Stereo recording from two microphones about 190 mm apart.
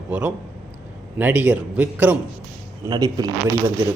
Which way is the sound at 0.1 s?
5° right (ahead or behind).